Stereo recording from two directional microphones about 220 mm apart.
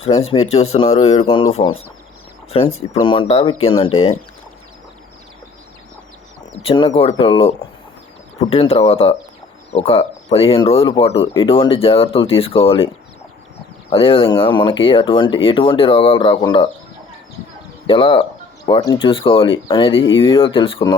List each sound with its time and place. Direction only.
0.3 s speech: 25° left (ahead or behind)
6.6 s speech: 25° left (ahead or behind)
13.9 s speech: 25° left (ahead or behind)
17.8 s speech: 25° left (ahead or behind)